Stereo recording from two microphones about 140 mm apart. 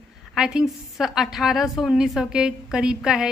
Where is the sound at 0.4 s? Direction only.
5° right (ahead or behind).